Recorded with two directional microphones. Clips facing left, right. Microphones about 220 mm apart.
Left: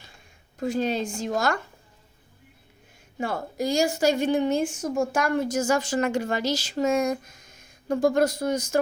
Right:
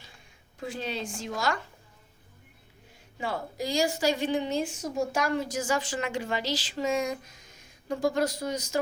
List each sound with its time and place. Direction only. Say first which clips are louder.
0.6 s a woman's voice: left 8 dB; 45° left (ahead or behind)
3.2 s a woman's voice: left 4 dB; 45° left (ahead or behind)